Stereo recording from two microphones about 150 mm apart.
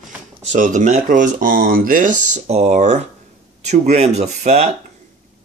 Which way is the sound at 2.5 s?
50° right (ahead or behind).